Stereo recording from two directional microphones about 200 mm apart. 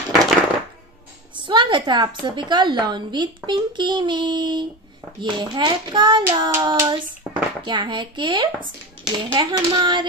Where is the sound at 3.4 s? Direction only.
25° right (ahead or behind).